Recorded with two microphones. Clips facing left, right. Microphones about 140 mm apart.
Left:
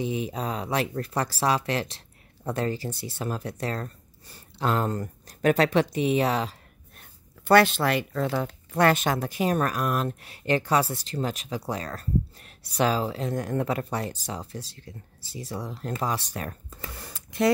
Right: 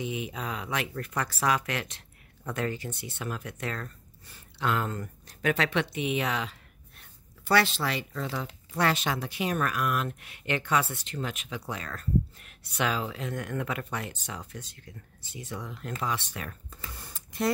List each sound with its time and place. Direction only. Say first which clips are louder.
0.0 s speech: left 5 dB; 35° left (ahead or behind)
7.0 s speech: left 3 dB; 55° left (ahead or behind)
16.9 s speech: left 5 dB; 80° left